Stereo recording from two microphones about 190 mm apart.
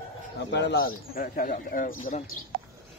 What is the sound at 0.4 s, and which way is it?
Speech, 65° left (ahead or behind).